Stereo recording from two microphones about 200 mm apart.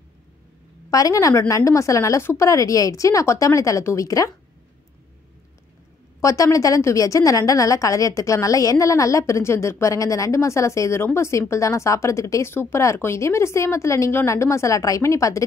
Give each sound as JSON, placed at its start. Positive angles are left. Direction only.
{"t": 0.8, "sound": "a woman's voice", "side_deg": 15}
{"t": 6.2, "sound": "a woman's voice", "side_deg": 15}